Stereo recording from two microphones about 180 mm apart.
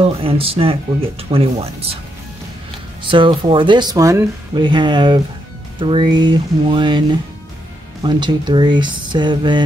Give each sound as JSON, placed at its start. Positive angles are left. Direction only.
{"t": 0.0, "sound": "speech", "side_deg": -30}
{"t": 3.0, "sound": "speech", "side_deg": -25}